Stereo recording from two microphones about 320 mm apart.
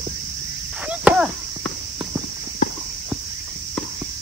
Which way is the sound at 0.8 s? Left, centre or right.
Centre.